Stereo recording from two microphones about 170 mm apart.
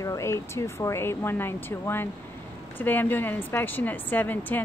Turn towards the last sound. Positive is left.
turn(degrees=10)  # may be behind; listen again after turning